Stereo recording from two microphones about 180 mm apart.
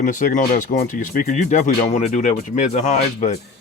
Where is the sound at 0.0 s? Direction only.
45° left (ahead or behind).